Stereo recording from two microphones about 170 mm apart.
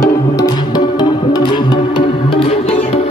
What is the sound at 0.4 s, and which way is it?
Music, 25° left (ahead or behind).